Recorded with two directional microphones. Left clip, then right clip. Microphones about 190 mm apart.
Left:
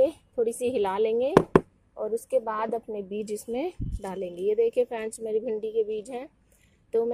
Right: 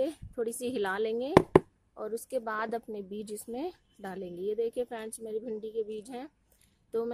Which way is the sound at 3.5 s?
Centre (ahead or behind).